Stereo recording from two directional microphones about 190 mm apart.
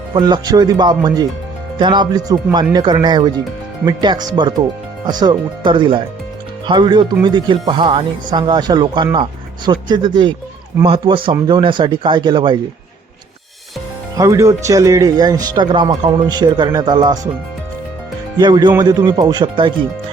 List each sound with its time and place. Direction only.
0.1 s speech: 20° right (ahead or behind)
14.2 s speech: 15° right (ahead or behind)
18.3 s speech: 25° right (ahead or behind)